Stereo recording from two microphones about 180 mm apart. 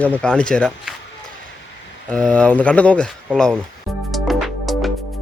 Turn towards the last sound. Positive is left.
turn(degrees=0)  # may be behind; listen again after turning